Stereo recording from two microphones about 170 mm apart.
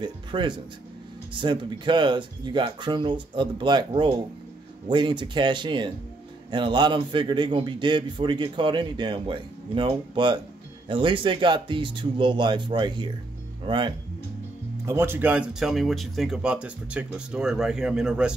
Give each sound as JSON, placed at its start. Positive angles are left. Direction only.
{"t": 0.0, "sound": "a man's voice", "side_deg": -30}
{"t": 14.9, "sound": "speech", "side_deg": -15}